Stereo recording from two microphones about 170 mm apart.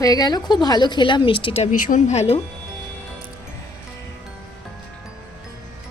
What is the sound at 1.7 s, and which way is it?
Speech, 50° left (ahead or behind).